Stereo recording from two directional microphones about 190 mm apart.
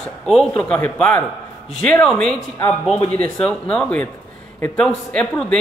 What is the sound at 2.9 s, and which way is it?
Speech, 25° left (ahead or behind).